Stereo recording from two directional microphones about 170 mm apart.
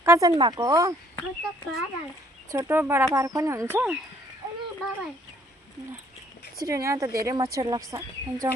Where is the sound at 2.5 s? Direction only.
15° right (ahead or behind).